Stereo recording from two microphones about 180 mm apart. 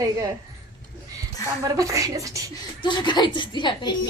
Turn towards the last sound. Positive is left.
turn(degrees=25)  # may be behind; listen again after turning